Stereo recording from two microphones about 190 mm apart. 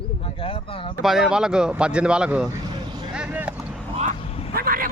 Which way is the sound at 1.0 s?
Centre (ahead or behind).